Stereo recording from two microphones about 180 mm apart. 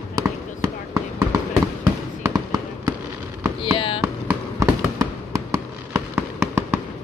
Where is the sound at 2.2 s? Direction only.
15° right (ahead or behind).